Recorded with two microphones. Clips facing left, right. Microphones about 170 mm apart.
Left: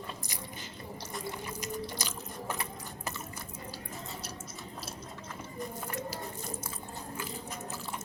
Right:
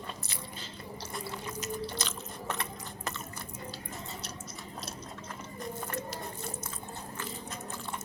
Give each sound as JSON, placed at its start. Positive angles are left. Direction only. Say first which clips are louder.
{"t": 1.6, "sound": "biting", "louder": "right 2 dB", "side_deg": 10}